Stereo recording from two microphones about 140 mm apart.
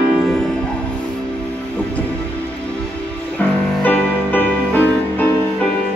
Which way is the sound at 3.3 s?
10° left (ahead or behind).